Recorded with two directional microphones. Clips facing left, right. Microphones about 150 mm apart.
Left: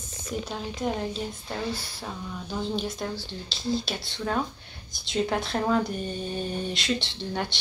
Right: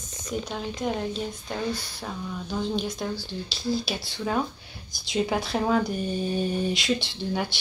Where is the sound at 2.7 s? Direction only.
Centre (ahead or behind).